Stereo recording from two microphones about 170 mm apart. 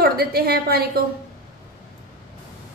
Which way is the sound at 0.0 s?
65° right (ahead or behind).